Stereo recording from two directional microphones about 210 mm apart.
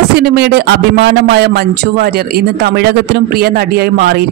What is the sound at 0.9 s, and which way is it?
A woman's voice, 55° right (ahead or behind).